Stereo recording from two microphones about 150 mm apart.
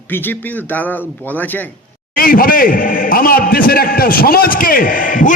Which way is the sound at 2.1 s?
75° left (ahead or behind).